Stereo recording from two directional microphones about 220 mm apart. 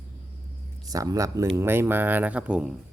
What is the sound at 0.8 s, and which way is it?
Speech, 15° right (ahead or behind).